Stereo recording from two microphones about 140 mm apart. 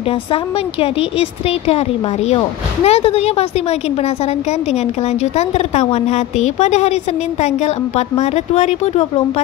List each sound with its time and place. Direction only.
0.3 s a woman's voice: 40° left (ahead or behind)
2.2 s a woman's voice: 45° left (ahead or behind)
5.2 s a woman's voice: 50° left (ahead or behind)